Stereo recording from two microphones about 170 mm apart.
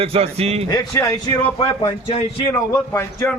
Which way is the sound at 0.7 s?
20° left (ahead or behind).